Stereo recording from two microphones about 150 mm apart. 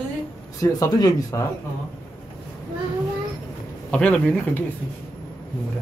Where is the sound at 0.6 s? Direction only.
20° left (ahead or behind).